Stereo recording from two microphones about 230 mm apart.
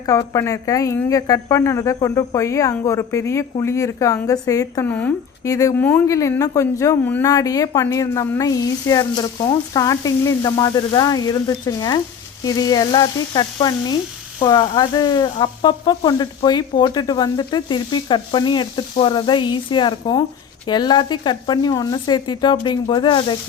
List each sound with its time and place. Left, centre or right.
0.0 s a woman's voice: centre